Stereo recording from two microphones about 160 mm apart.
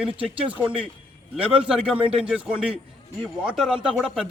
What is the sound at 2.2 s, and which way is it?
A man's voice, 5° right (ahead or behind).